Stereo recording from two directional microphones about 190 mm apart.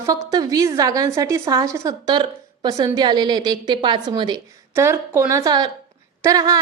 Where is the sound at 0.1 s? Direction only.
20° right (ahead or behind).